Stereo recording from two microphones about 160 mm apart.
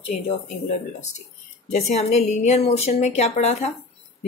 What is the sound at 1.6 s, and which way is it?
A woman's voice, 45° left (ahead or behind).